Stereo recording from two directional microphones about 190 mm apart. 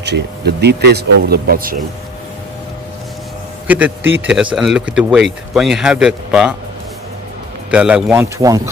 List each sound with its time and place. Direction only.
0.0 s speech: 60° right (ahead or behind)
3.6 s speech: 10° right (ahead or behind)
7.7 s speech: 5° right (ahead or behind)